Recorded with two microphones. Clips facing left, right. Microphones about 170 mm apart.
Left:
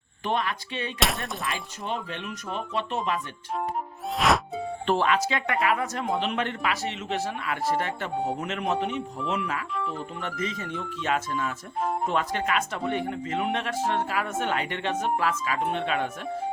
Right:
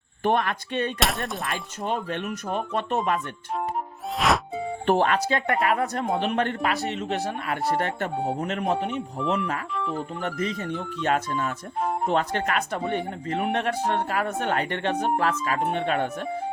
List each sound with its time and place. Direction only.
0.2 s speech: 55° right (ahead or behind)
0.9 s speech: centre (ahead or behind)
1.8 s speech: 50° right (ahead or behind)
4.2 s music: centre (ahead or behind)
4.9 s speech: 50° right (ahead or behind)
8.1 s speech: centre (ahead or behind)
8.4 s speech: 50° right (ahead or behind)
9.7 s speech: centre (ahead or behind)
10.8 s speech: 50° right (ahead or behind)
12.0 s speech: 60° right (ahead or behind)
12.5 s speech: 50° right (ahead or behind)